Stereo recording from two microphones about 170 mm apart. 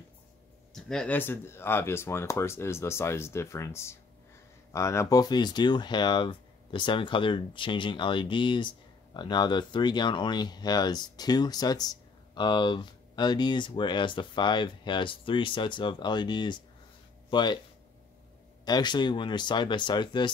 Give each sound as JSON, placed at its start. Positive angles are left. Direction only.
{"t": 0.7, "sound": "speech", "side_deg": 5}
{"t": 18.7, "sound": "speech", "side_deg": 25}